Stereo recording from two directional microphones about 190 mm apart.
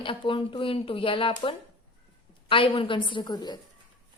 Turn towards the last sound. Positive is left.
turn(degrees=20)  # may be behind; listen again after turning